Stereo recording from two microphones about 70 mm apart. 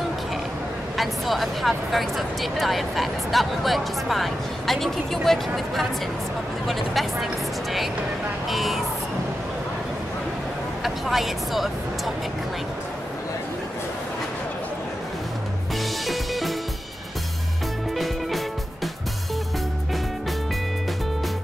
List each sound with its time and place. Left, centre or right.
0.9 s speech: centre
6.7 s speech: centre
8.5 s speech: centre
10.8 s speech: centre
16.1 s music: centre
17.9 s music: centre